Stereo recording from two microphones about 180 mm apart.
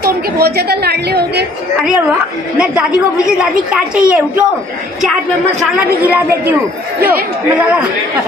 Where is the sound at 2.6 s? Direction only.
5° right (ahead or behind).